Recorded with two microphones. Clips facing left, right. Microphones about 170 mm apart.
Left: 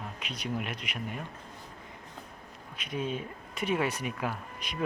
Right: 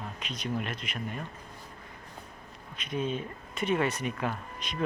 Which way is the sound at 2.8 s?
10° left (ahead or behind).